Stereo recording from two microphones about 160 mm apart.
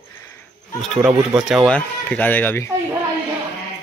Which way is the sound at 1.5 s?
5° left (ahead or behind).